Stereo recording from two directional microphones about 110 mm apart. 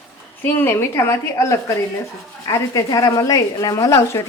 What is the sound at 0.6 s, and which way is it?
A woman's voice, 20° left (ahead or behind).